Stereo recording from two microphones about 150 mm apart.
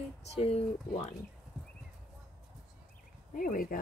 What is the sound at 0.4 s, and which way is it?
Speech, 40° left (ahead or behind).